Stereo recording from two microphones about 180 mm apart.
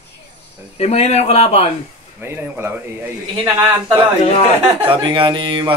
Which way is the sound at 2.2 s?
10° right (ahead or behind).